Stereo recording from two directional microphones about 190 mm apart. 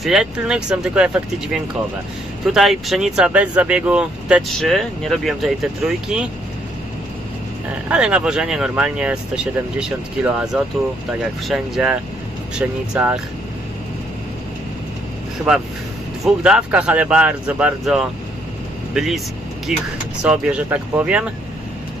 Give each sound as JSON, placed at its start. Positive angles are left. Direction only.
{"t": 0.0, "sound": "speech", "side_deg": 0}
{"t": 2.4, "sound": "speech", "side_deg": 0}
{"t": 7.9, "sound": "speech", "side_deg": -5}
{"t": 16.4, "sound": "speech", "side_deg": -5}